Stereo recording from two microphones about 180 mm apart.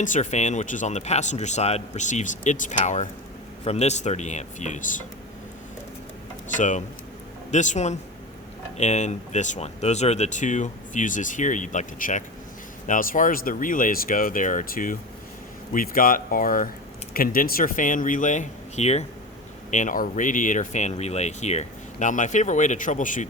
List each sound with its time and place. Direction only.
0.0 s a man's voice: 40° left (ahead or behind)
6.6 s a man's voice: 45° left (ahead or behind)